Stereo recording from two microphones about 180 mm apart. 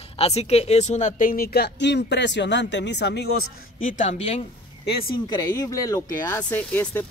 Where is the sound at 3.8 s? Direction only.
45° left (ahead or behind).